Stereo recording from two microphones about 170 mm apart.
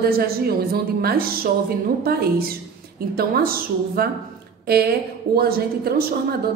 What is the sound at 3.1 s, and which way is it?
A woman's voice, 60° right (ahead or behind).